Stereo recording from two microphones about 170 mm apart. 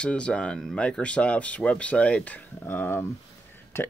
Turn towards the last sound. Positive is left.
turn(degrees=15)  # may be behind; listen again after turning